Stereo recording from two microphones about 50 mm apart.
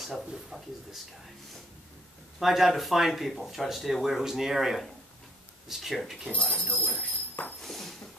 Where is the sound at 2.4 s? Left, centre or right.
Centre.